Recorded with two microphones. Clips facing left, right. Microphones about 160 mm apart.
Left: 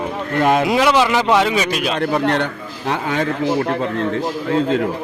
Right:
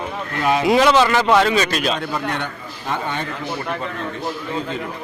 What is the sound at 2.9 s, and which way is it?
Speech, 90° left.